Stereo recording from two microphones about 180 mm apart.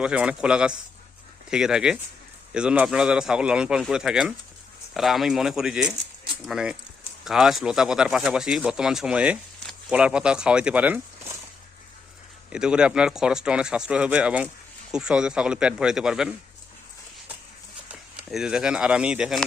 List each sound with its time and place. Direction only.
0.0 s speech: 5° right (ahead or behind)
12.5 s speech: 5° right (ahead or behind)
17.8 s speech: 5° right (ahead or behind)